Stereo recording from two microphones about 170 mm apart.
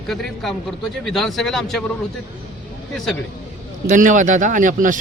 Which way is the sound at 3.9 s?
50° right (ahead or behind).